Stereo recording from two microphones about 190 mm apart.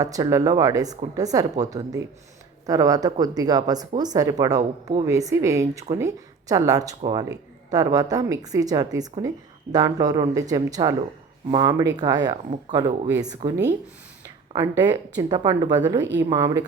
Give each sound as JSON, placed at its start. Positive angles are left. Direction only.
{"t": 0.0, "sound": "a woman's voice", "side_deg": -20}
{"t": 4.5, "sound": "speech", "side_deg": -35}
{"t": 5.0, "sound": "a woman's voice", "side_deg": -15}
{"t": 13.4, "sound": "speech", "side_deg": -40}
{"t": 14.5, "sound": "a woman's voice", "side_deg": -20}